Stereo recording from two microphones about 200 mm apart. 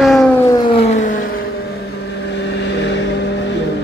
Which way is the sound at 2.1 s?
60° left (ahead or behind).